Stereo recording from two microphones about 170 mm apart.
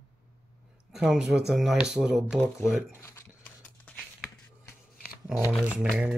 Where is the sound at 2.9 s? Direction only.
15° left (ahead or behind).